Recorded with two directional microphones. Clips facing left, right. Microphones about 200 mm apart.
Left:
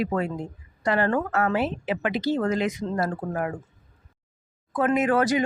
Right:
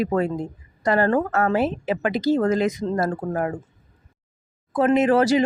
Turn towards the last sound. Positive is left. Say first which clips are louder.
# right 4 dB
turn(degrees=-30)  # may be behind; listen again after turning